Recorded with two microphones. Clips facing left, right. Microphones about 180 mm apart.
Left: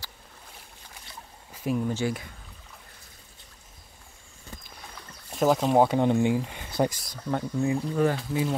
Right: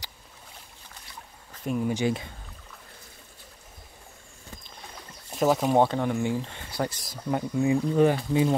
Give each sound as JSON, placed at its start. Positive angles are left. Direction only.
{"t": 1.5, "sound": "a sound", "side_deg": 10}
{"t": 1.8, "sound": "speech", "side_deg": -10}
{"t": 5.3, "sound": "speech", "side_deg": 0}
{"t": 5.9, "sound": "speech", "side_deg": 20}
{"t": 7.2, "sound": "speech", "side_deg": -10}